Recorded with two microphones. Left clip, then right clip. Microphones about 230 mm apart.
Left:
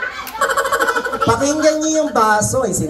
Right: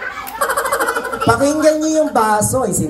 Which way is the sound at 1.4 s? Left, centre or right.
Right.